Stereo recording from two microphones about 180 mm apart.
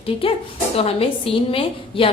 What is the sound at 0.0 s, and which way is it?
A woman's voice, 30° left (ahead or behind).